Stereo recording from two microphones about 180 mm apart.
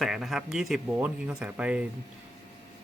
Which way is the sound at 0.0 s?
Centre (ahead or behind).